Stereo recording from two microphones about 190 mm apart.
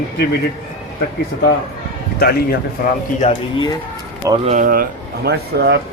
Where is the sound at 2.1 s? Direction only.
55° left (ahead or behind).